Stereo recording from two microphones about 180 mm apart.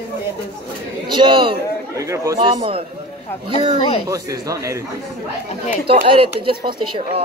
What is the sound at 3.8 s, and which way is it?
Speech, 35° left (ahead or behind).